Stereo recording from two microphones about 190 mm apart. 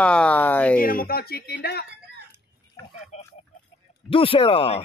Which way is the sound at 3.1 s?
35° left (ahead or behind).